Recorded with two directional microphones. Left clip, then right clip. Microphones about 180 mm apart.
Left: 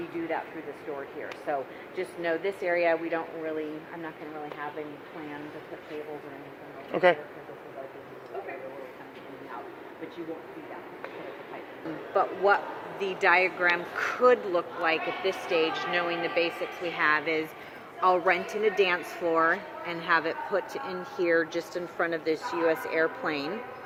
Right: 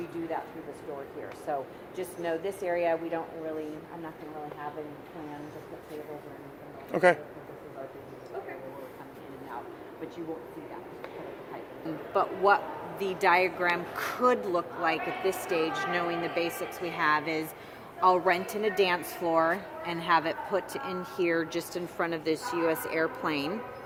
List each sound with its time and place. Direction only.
1.5 s speech: 40° left (ahead or behind)
6.9 s speech: 10° right (ahead or behind)
12.1 s a man's voice: 65° right (ahead or behind)